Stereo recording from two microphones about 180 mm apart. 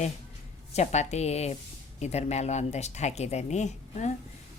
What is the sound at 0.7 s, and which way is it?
A woman's voice, 40° left (ahead or behind).